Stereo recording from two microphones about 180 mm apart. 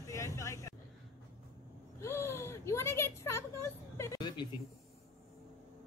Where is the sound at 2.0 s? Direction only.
15° left (ahead or behind).